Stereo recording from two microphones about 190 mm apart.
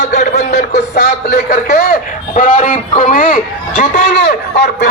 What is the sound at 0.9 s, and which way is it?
Speech, 60° left (ahead or behind).